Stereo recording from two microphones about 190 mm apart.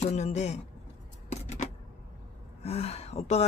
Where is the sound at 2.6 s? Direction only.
30° left (ahead or behind).